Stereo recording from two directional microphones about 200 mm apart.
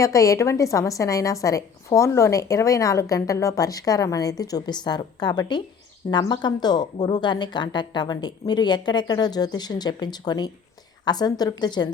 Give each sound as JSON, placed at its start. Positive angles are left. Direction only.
{"t": 0.0, "sound": "a woman's voice", "side_deg": 15}